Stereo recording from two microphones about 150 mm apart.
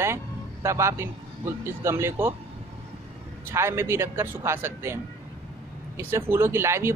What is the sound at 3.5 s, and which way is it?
Speech, 15° right (ahead or behind).